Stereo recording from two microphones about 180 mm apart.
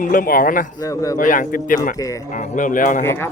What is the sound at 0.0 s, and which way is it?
Speech, 50° left (ahead or behind).